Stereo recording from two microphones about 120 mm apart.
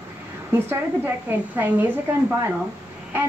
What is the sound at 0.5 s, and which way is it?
A woman's voice, 20° right (ahead or behind).